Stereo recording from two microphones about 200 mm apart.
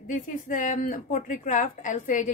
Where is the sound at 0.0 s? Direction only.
40° left (ahead or behind).